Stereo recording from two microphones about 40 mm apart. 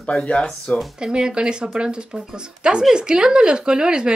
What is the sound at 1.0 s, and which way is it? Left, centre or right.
Speech, centre.